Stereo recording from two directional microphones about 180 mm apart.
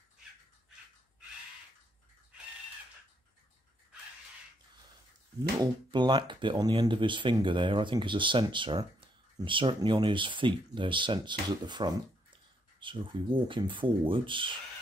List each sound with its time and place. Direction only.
5.6 s speech: 25° right (ahead or behind)